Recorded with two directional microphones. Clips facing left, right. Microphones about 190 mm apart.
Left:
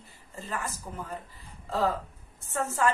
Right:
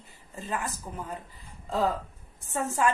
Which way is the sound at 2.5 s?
15° right (ahead or behind).